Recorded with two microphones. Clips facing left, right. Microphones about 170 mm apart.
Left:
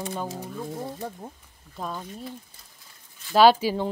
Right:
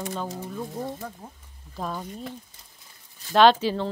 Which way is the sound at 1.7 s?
Centre (ahead or behind).